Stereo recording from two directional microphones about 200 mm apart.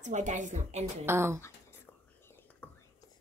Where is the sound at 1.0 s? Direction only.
10° right (ahead or behind).